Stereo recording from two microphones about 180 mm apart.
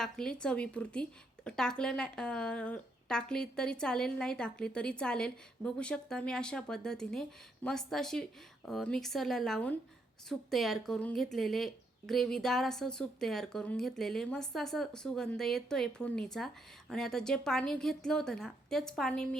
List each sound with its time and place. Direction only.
0.0 s speech: 5° left (ahead or behind)